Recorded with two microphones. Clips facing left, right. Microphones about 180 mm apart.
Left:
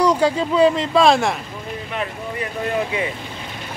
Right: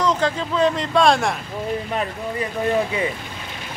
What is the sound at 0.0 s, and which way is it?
Speech, 10° left (ahead or behind).